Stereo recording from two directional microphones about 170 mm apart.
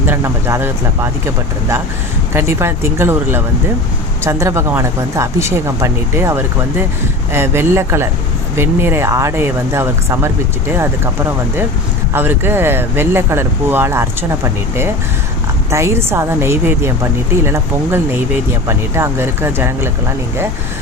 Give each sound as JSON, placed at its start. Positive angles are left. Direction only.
{"t": 0.0, "sound": "a woman's voice", "side_deg": -15}
{"t": 2.3, "sound": "a woman's voice", "side_deg": -15}
{"t": 12.1, "sound": "a woman's voice", "side_deg": -10}